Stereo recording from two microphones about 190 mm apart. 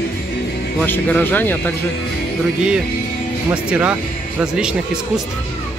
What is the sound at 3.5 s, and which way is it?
Speech, 5° right (ahead or behind).